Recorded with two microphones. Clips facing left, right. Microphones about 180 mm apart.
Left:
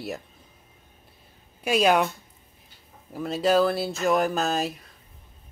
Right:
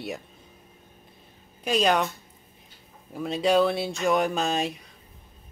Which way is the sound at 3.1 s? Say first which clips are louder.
Even; centre (ahead or behind).